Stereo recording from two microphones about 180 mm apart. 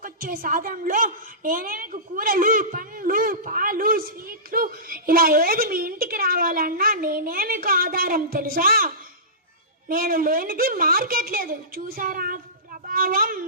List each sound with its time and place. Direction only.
0.0 s a woman's voice: 50° right (ahead or behind)
9.9 s a woman's voice: 50° right (ahead or behind)